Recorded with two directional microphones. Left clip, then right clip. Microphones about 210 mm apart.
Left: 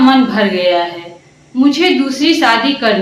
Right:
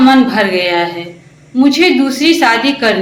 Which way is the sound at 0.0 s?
20° right (ahead or behind).